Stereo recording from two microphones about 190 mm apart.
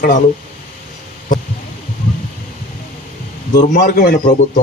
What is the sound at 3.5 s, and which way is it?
Speech, 45° left (ahead or behind).